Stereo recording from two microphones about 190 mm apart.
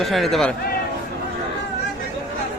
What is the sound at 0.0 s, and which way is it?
Speech, centre (ahead or behind).